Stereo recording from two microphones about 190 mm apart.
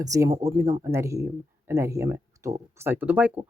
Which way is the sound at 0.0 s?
20° right (ahead or behind).